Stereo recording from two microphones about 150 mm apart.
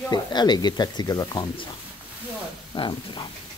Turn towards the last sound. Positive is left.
turn(degrees=30)  # may be behind; listen again after turning